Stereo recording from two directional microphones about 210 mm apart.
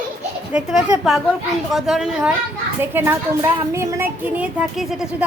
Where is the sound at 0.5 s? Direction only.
Centre (ahead or behind).